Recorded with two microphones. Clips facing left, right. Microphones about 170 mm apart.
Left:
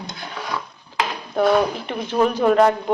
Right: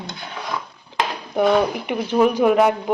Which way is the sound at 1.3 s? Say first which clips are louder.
Even; 15° right (ahead or behind).